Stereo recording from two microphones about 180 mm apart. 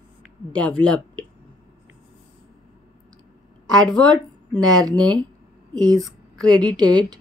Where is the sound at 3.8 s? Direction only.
5° left (ahead or behind).